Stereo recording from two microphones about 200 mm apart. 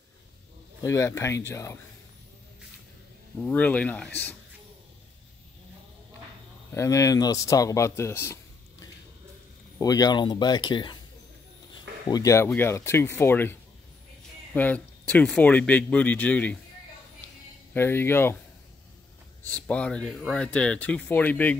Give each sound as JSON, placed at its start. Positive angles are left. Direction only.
{"t": 0.8, "sound": "speech", "side_deg": 15}
{"t": 3.3, "sound": "speech", "side_deg": 5}
{"t": 6.7, "sound": "speech", "side_deg": 15}
{"t": 12.1, "sound": "speech", "side_deg": 15}
{"t": 17.7, "sound": "speech", "side_deg": 10}
{"t": 19.4, "sound": "speech", "side_deg": 5}